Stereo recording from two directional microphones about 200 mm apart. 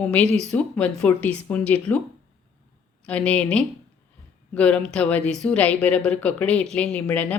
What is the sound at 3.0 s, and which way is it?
A woman's voice, 5° left (ahead or behind).